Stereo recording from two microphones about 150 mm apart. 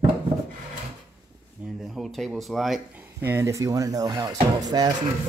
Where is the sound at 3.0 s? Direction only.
15° right (ahead or behind).